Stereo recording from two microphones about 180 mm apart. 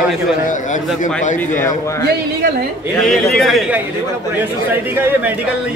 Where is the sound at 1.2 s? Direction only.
45° left (ahead or behind).